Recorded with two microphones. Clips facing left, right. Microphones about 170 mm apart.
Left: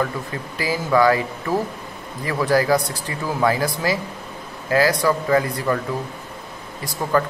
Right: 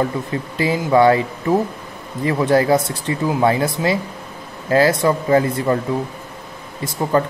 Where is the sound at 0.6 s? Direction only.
25° right (ahead or behind).